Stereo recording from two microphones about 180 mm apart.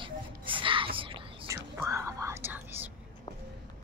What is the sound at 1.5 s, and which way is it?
Whispering, 15° right (ahead or behind).